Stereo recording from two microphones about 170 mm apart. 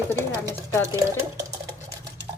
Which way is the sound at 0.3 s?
15° right (ahead or behind).